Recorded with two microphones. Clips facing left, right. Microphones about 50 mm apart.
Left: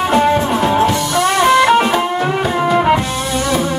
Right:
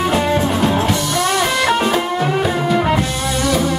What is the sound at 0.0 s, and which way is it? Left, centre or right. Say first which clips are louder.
Music: left 3 dB; centre.